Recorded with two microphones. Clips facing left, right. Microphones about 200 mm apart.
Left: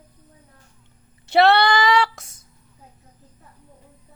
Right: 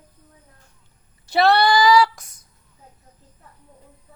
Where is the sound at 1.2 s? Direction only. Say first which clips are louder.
Left 1 dB; 25° left (ahead or behind).